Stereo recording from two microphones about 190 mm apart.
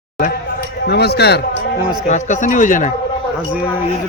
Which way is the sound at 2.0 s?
40° left (ahead or behind).